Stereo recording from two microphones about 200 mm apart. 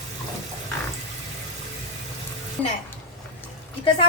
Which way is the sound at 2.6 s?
5° left (ahead or behind).